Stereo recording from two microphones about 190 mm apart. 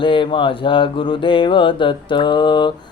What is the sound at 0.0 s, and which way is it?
Mantra, 25° left (ahead or behind).